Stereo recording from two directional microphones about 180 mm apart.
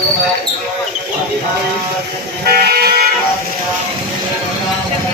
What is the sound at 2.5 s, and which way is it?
Music, 60° right (ahead or behind).